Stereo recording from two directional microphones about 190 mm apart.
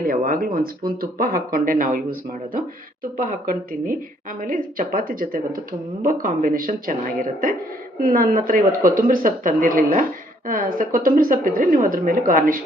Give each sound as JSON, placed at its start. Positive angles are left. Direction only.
{"t": 0.0, "sound": "speech", "side_deg": -50}